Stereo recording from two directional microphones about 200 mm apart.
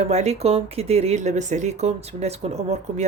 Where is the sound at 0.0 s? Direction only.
35° right (ahead or behind).